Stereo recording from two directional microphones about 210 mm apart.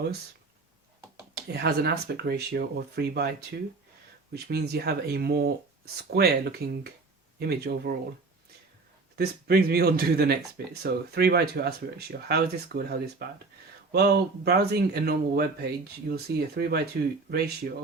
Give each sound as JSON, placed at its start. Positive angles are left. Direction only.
{"t": 1.5, "sound": "speech", "side_deg": -50}
{"t": 4.4, "sound": "speech", "side_deg": -50}
{"t": 9.1, "sound": "speech", "side_deg": -50}